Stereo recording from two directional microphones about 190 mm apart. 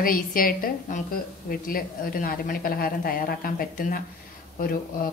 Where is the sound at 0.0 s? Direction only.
50° left (ahead or behind).